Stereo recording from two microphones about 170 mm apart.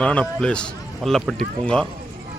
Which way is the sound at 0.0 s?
5° left (ahead or behind).